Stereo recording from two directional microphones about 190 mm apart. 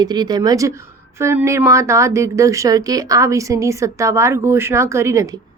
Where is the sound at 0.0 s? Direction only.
20° right (ahead or behind).